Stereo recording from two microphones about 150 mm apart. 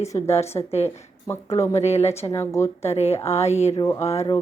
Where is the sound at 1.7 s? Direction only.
45° left (ahead or behind).